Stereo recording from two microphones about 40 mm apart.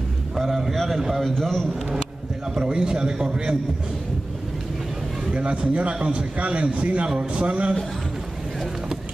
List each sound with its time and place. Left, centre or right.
0.4 s a man's voice: centre
1.4 s speech: centre
2.5 s a man's voice: right
5.3 s a man's voice: right